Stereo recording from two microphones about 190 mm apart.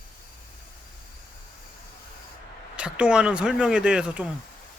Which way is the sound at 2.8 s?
5° right (ahead or behind).